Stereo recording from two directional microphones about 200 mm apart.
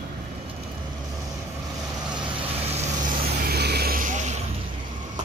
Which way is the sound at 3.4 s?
55° right (ahead or behind).